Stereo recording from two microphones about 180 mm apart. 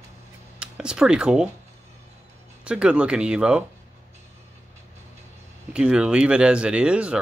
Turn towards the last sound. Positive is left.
turn(degrees=-5)  # may be behind; listen again after turning